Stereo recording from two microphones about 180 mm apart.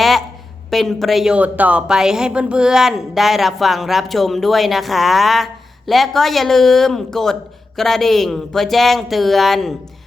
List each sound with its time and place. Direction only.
0.7 s a woman's voice: centre (ahead or behind)